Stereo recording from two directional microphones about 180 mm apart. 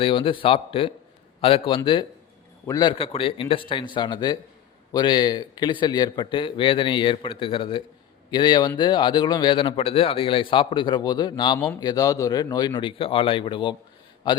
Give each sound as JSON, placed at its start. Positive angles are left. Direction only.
{"t": 0.0, "sound": "a man's voice", "side_deg": 30}